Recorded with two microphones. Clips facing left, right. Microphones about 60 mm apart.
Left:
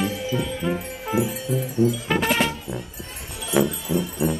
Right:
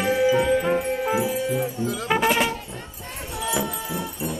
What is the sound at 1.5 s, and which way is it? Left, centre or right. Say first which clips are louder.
Music: left 4 dB; right.